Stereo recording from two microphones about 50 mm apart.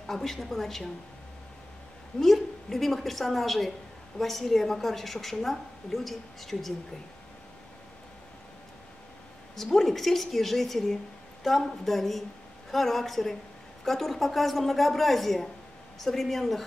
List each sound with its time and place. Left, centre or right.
0.0 s a woman's voice: centre
2.1 s a woman's voice: centre
9.6 s a woman's voice: centre